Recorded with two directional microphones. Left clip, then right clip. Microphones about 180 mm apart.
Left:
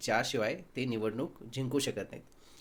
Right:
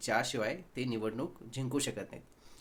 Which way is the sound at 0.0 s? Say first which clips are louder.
Left 2 dB; 15° left (ahead or behind).